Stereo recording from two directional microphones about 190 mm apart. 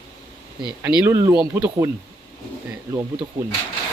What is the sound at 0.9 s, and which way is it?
Speech, 10° right (ahead or behind).